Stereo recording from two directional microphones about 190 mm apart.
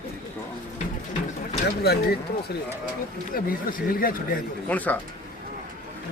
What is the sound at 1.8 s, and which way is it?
A man's voice, 55° left (ahead or behind).